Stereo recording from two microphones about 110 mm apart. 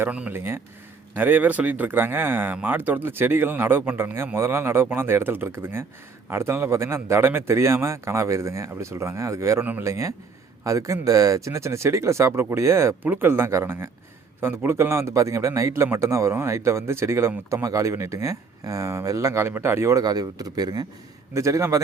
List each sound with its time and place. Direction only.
0.0 s a man's voice: 15° right (ahead or behind)
20.0 s a man's voice: 35° right (ahead or behind)